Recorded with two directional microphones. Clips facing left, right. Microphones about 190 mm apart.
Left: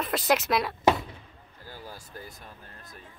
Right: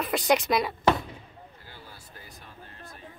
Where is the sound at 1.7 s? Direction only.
45° left (ahead or behind).